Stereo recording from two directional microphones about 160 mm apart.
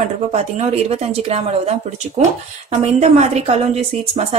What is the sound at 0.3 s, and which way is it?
Speech, 45° right (ahead or behind).